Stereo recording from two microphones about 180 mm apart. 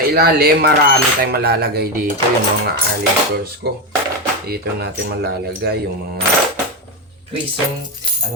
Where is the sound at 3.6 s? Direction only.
70° right (ahead or behind).